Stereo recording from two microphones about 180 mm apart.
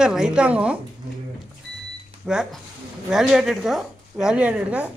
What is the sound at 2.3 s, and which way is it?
A woman's voice, 5° right (ahead or behind).